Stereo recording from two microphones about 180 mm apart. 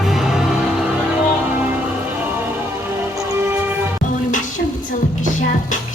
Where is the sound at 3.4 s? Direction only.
15° right (ahead or behind).